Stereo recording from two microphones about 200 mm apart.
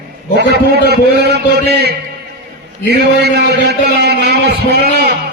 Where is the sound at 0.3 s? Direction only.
55° right (ahead or behind).